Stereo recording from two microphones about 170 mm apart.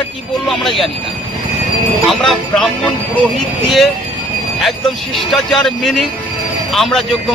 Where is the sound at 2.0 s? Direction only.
Centre (ahead or behind).